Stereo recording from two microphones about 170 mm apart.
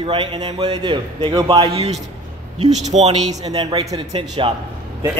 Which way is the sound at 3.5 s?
25° right (ahead or behind).